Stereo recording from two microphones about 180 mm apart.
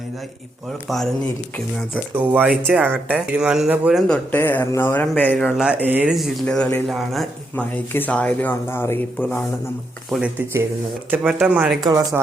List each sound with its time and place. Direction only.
1.9 s speech: 10° right (ahead or behind); by 5.4 s 10° left (ahead or behind)
5.4 s speech: 5° right (ahead or behind)
6.4 s speech: 10° left (ahead or behind)
10.1 s speech: 5° right (ahead or behind)
11.8 s speech: 20° right (ahead or behind)